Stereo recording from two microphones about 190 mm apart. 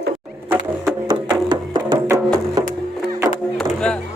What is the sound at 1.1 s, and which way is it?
Music, 20° right (ahead or behind).